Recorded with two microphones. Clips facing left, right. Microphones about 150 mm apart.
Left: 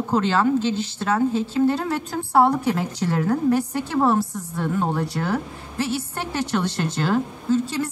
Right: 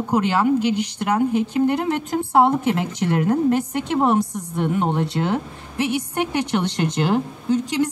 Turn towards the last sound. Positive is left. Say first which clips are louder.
# right 2 dB
turn(degrees=-20)  # may be behind; listen again after turning